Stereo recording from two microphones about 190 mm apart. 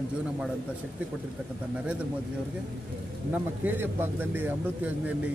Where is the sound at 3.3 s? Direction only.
10° right (ahead or behind).